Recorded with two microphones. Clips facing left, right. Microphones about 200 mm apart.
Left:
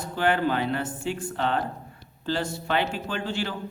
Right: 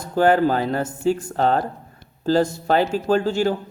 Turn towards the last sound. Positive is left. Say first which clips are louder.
# right 11 dB
turn(degrees=-45)  # may be behind; listen again after turning